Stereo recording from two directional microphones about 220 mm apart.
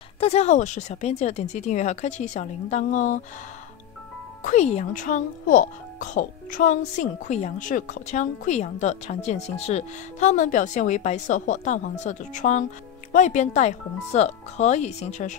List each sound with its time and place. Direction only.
0.2 s speech: 30° left (ahead or behind)
4.4 s speech: 35° left (ahead or behind)